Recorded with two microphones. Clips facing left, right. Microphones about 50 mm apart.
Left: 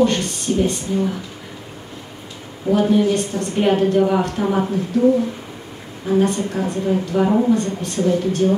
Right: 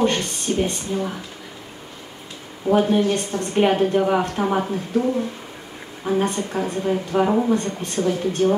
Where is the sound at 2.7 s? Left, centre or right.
Right.